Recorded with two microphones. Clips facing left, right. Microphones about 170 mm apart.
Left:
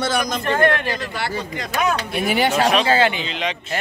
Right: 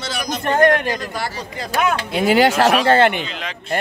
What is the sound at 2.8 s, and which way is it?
Speech, 60° right (ahead or behind).